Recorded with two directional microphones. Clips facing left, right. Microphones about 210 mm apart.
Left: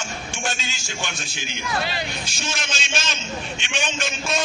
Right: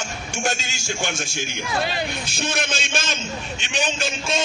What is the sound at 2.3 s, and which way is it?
Speech, 55° right (ahead or behind).